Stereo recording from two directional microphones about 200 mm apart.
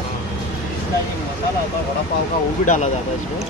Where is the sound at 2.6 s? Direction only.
40° left (ahead or behind).